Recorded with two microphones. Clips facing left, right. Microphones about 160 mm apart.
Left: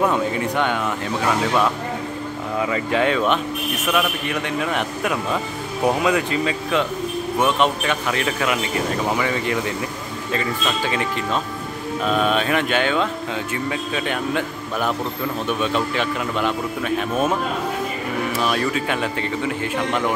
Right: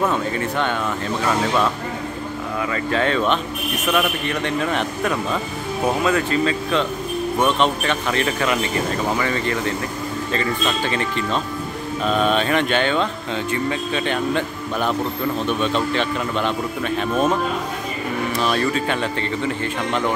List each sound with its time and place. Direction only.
0.0 s a man's voice: 15° left (ahead or behind)
2.6 s a man's voice: 15° left (ahead or behind)
18.4 s a man's voice: 5° left (ahead or behind)